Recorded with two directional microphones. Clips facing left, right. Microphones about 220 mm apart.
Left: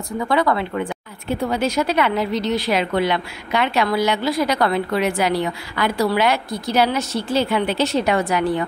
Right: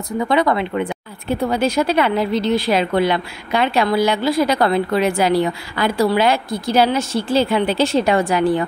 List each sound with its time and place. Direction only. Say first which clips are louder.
0.3 s a woman's voice: right 2 dB; 20° right (ahead or behind)
1.3 s a woman's voice: right 3 dB; 35° right (ahead or behind)